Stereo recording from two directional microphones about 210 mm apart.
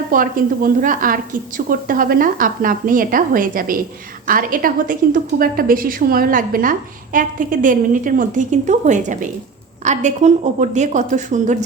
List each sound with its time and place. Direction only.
0.1 s a woman's voice: 40° right (ahead or behind)